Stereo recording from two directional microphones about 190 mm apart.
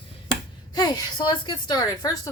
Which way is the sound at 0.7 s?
20° left (ahead or behind).